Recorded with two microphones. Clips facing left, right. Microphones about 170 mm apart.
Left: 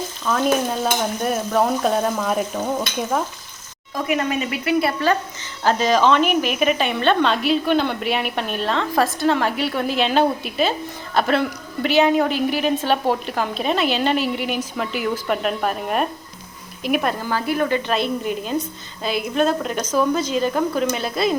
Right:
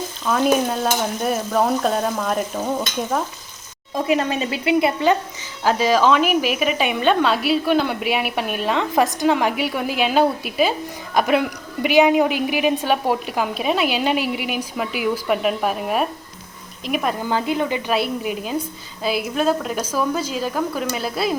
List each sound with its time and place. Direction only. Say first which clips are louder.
0.3 s stir: right 2 dB; 5° right (ahead or behind)
3.9 s speech: right 2 dB; 25° right (ahead or behind)
5.6 s a woman's voice: even; 5° right (ahead or behind)
16.8 s stir: left 2 dB; centre (ahead or behind)
17.2 s a woman's voice: even; 20° right (ahead or behind)
19.0 s stir: even; 5° right (ahead or behind)